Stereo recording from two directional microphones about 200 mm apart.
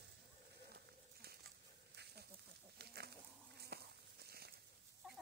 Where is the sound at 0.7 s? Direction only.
50° right (ahead or behind).